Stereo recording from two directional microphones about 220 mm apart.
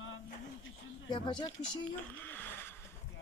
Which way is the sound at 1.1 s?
20° left (ahead or behind).